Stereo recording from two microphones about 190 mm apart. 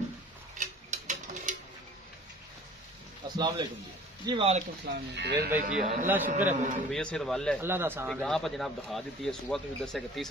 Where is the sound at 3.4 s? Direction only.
20° right (ahead or behind).